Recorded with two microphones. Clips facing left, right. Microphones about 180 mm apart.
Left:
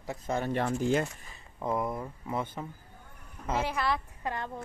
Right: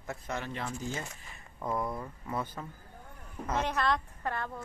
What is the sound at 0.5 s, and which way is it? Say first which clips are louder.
Speech: left 10 dB; 55° left (ahead or behind).